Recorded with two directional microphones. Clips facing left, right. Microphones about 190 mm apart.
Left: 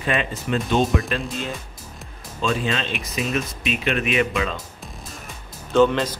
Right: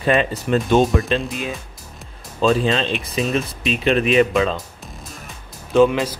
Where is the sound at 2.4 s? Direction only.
30° right (ahead or behind).